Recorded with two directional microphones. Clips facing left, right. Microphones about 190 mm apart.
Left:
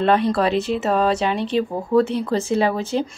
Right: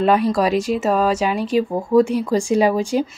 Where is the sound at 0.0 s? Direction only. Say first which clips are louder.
Right 1 dB; 10° right (ahead or behind).